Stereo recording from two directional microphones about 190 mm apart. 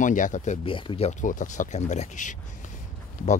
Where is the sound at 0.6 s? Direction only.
25° left (ahead or behind).